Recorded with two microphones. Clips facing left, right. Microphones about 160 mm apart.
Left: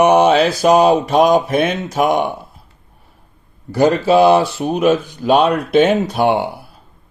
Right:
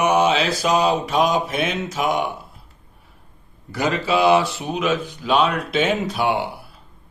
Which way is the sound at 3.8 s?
45° left (ahead or behind).